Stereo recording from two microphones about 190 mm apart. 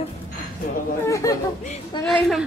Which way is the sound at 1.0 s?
15° left (ahead or behind).